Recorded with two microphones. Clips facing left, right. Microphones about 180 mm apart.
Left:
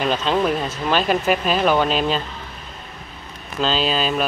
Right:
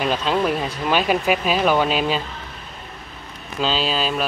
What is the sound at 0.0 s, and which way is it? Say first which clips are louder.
Speech: left 1 dB; 5° right (ahead or behind).